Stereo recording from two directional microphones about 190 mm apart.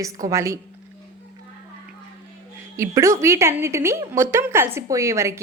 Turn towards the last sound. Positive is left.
turn(degrees=-15)  # may be behind; listen again after turning